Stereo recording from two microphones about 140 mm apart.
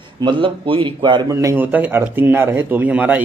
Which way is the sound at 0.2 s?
35° right (ahead or behind).